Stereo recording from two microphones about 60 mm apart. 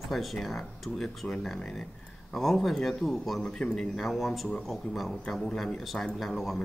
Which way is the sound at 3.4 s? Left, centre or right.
Centre.